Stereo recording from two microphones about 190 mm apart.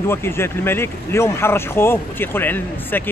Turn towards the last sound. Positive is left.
turn(degrees=10)  # may be behind; listen again after turning